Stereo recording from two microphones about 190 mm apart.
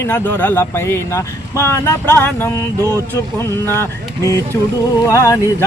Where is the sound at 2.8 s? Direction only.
15° right (ahead or behind).